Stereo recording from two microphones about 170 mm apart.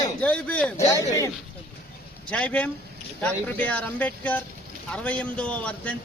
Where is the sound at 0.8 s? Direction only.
20° left (ahead or behind).